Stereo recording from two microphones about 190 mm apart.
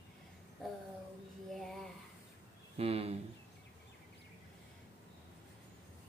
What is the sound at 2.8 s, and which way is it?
Speech, 30° right (ahead or behind).